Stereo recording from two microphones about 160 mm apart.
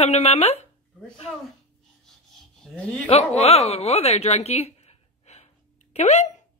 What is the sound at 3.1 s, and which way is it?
Speech, 40° left (ahead or behind).